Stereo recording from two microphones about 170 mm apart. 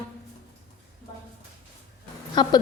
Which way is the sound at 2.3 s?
25° left (ahead or behind).